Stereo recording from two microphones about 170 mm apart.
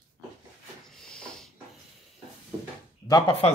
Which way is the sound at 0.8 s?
5° left (ahead or behind).